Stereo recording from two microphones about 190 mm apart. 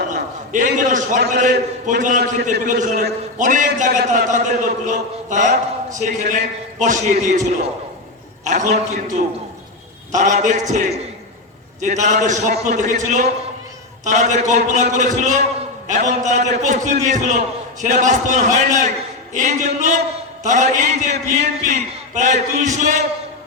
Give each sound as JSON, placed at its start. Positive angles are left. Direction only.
{"t": 0.1, "sound": "a sound", "side_deg": -40}
{"t": 1.9, "sound": "a man's voice", "side_deg": -40}
{"t": 8.4, "sound": "a man's voice", "side_deg": -40}